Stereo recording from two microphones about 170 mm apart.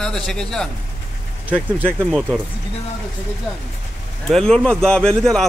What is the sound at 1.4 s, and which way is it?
Speech, 10° right (ahead or behind).